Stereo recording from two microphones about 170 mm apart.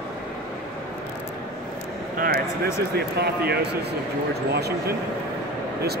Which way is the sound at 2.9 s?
70° right (ahead or behind).